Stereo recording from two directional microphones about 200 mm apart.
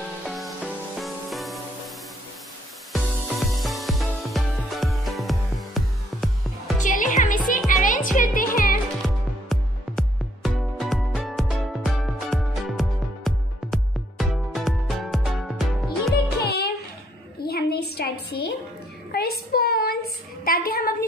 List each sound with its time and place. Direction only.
0.9 s music: centre (ahead or behind)
2.9 s music: centre (ahead or behind)
6.8 s music: 40° left (ahead or behind)
9.0 s music: centre (ahead or behind)
16.4 s a sound: 50° left (ahead or behind)
19.1 s child singing: 50° left (ahead or behind)
20.4 s a sound: 50° left (ahead or behind)